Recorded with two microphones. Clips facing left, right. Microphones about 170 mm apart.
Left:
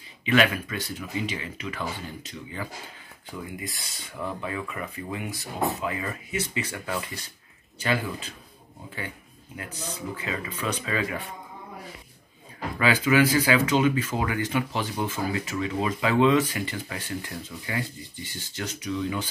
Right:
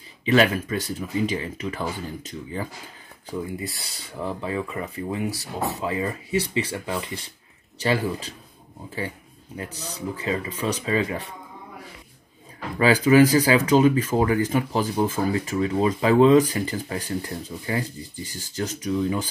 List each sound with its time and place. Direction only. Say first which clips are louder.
0.2 s speech: right 3 dB; 35° right (ahead or behind)
3.3 s speech: right 6 dB; 35° right (ahead or behind)
9.6 s speech: right 2 dB; 35° right (ahead or behind)
12.7 s speech: right 6 dB; 35° right (ahead or behind)